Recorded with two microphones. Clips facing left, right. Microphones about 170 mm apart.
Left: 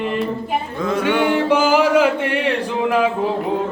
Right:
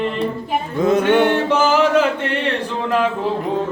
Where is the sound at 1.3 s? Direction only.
10° left (ahead or behind).